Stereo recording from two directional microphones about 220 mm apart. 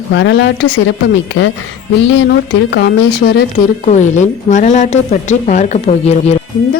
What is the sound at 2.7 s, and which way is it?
A woman's voice, 55° left (ahead or behind).